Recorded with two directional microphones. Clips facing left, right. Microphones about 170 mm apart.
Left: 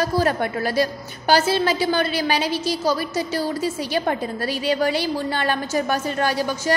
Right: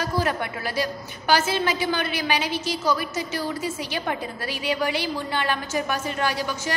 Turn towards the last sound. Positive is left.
turn(degrees=40)  # may be behind; listen again after turning